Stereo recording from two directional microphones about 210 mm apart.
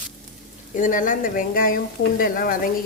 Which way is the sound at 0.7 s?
40° left (ahead or behind).